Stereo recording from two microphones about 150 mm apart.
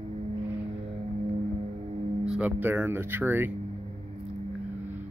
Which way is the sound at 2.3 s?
10° right (ahead or behind).